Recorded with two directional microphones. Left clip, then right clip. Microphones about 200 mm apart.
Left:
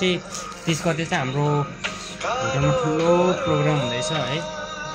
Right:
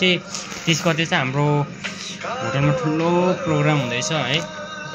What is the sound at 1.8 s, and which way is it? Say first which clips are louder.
Music: left 1 dB; 45° left (ahead or behind).